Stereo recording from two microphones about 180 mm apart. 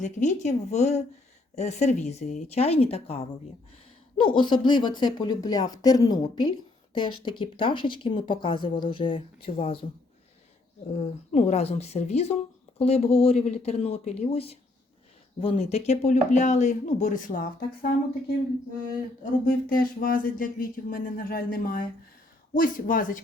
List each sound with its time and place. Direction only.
0.0 s a woman's voice: 40° left (ahead or behind)
10.9 s speech: 35° left (ahead or behind)